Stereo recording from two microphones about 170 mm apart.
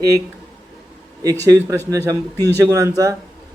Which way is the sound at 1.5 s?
15° right (ahead or behind).